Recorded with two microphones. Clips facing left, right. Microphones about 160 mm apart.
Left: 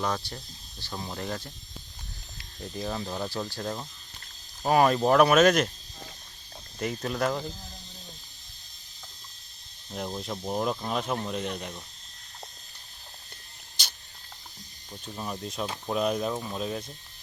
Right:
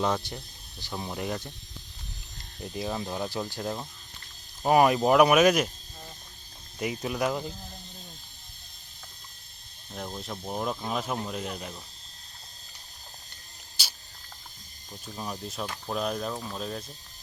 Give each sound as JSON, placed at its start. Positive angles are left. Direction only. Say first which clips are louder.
{"t": 0.0, "sound": "speech", "louder": "right 3 dB", "side_deg": -20}
{"t": 2.7, "sound": "speech", "louder": "right 1 dB", "side_deg": -15}
{"t": 6.7, "sound": "speech", "louder": "even", "side_deg": -10}
{"t": 9.9, "sound": "speech", "louder": "left 3 dB", "side_deg": 5}
{"t": 13.8, "sound": "a sound", "louder": "left 1 dB", "side_deg": -5}
{"t": 15.0, "sound": "speech", "louder": "left 1 dB", "side_deg": -5}